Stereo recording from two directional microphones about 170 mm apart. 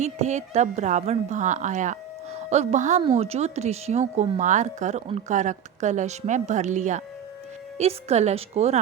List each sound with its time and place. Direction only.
0.0 s a woman's voice: 40° right (ahead or behind)